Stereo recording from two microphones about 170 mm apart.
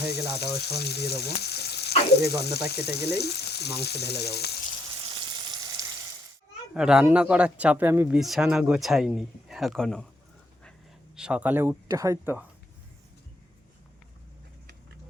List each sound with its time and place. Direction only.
0.1 s frying: 70° left (ahead or behind)
5.0 s frying: 25° right (ahead or behind)
6.7 s speech: 5° right (ahead or behind)
11.2 s speech: 5° right (ahead or behind)